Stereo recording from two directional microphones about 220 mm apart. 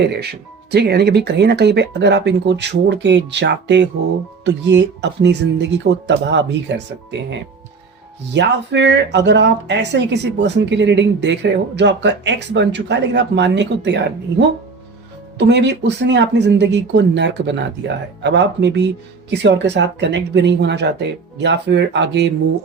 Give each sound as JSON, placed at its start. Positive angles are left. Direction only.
{"t": 0.0, "sound": "speech", "side_deg": -50}
{"t": 15.4, "sound": "speech", "side_deg": -50}